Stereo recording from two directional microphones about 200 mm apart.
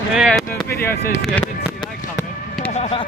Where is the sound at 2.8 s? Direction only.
30° left (ahead or behind).